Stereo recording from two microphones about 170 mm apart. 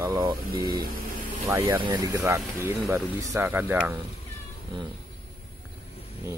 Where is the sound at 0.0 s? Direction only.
20° right (ahead or behind).